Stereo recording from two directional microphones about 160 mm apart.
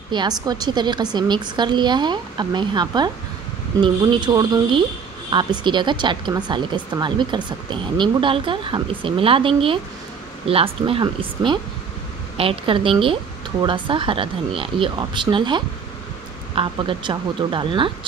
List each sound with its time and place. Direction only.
0.1 s speech: 25° right (ahead or behind)